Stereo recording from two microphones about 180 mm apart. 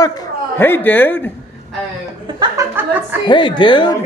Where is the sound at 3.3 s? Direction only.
25° left (ahead or behind).